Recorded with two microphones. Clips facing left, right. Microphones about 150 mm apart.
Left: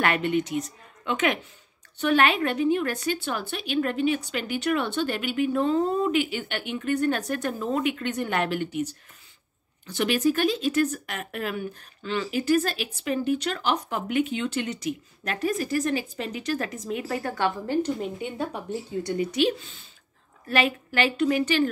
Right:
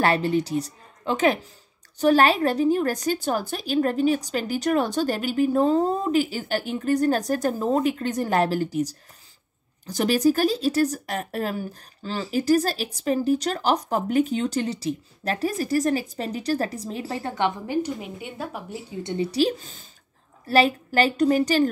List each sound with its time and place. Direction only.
0.0 s speech: 35° right (ahead or behind)
17.6 s a woman's voice: 10° right (ahead or behind)
19.0 s speech: 30° right (ahead or behind)